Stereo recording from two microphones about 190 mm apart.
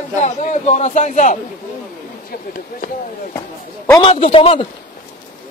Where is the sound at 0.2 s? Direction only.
40° left (ahead or behind).